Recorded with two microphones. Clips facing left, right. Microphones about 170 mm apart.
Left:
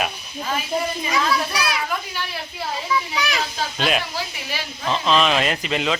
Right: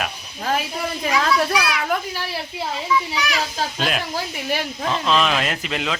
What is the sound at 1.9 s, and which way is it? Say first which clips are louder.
Speech: right 4 dB; 40° right (ahead or behind).